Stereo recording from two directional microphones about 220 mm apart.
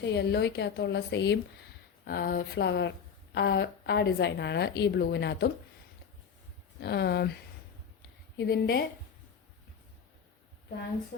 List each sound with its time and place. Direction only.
0.0 s a woman's voice: 50° left (ahead or behind)
6.7 s a woman's voice: 50° left (ahead or behind)
8.4 s a woman's voice: 45° left (ahead or behind)